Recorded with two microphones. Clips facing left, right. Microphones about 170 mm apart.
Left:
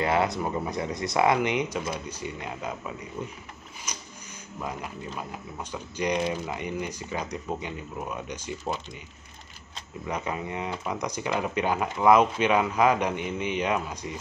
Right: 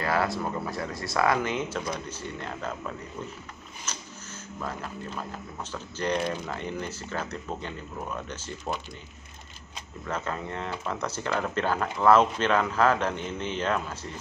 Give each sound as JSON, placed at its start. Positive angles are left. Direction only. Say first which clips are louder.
{"t": 0.0, "sound": "speech", "louder": "left 2 dB", "side_deg": 20}
{"t": 3.9, "sound": "a sound", "louder": "even", "side_deg": 15}
{"t": 4.6, "sound": "speech", "louder": "left 1 dB", "side_deg": 15}
{"t": 10.0, "sound": "speech", "louder": "left 1 dB", "side_deg": 15}